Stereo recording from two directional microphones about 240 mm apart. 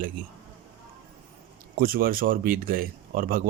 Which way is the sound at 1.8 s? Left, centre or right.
Right.